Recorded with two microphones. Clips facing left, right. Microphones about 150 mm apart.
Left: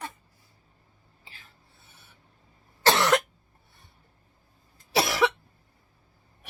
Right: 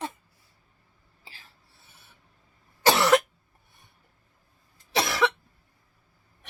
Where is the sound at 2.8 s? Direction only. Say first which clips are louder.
Right 2 dB; 10° right (ahead or behind).